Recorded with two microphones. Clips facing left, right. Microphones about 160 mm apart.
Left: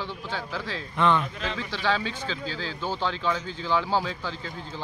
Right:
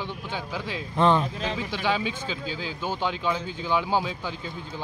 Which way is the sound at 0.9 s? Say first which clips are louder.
Right 2 dB; 35° right (ahead or behind).